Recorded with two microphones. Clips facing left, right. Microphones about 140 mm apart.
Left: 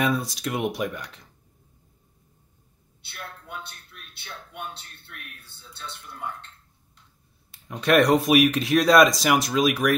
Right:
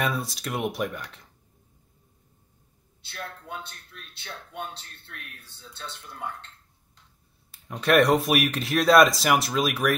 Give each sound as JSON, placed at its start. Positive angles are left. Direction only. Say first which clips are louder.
{"t": 0.0, "sound": "speech", "louder": "left 4 dB", "side_deg": 0}
{"t": 4.2, "sound": "a sound", "louder": "right 1 dB", "side_deg": -35}
{"t": 5.4, "sound": "a man's voice", "louder": "even", "side_deg": -35}
{"t": 7.5, "sound": "speech", "louder": "left 1 dB", "side_deg": 0}